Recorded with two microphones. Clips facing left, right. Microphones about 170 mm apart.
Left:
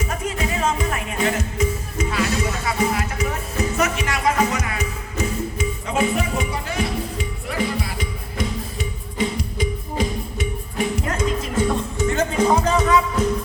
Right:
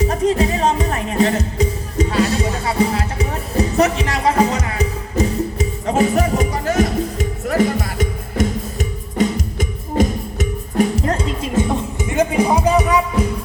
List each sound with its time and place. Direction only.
0.0 s music: 35° right (ahead or behind)
11.5 s music: 15° right (ahead or behind)